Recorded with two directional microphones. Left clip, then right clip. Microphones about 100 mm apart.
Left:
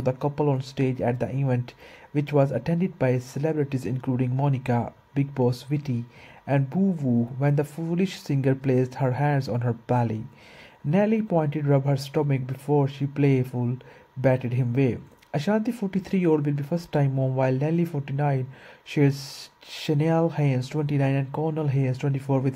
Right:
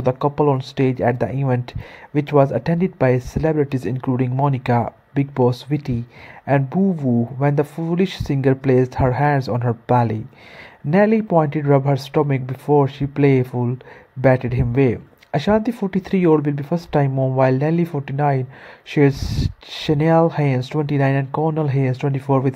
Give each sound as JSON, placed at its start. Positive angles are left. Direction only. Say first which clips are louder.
{"t": 0.0, "sound": "speech", "louder": "right 8 dB", "side_deg": -25}